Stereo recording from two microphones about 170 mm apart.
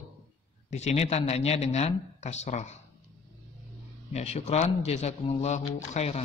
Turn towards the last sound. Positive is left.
turn(degrees=40)  # may be behind; listen again after turning